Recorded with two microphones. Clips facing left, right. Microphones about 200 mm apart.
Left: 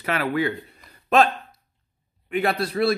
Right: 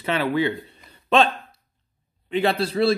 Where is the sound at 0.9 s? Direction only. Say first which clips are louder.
Even; 30° right (ahead or behind).